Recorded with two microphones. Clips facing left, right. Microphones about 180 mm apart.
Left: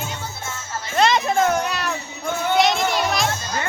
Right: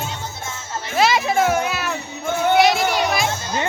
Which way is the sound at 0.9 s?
5° right (ahead or behind).